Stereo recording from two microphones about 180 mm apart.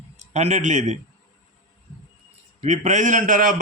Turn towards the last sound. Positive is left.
turn(degrees=-45)  # may be behind; listen again after turning